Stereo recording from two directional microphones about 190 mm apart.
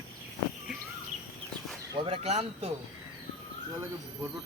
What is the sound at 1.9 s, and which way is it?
Speech, 25° right (ahead or behind).